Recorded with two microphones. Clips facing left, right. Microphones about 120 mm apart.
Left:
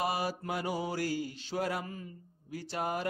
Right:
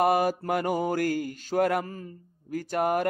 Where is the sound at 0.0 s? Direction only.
50° right (ahead or behind).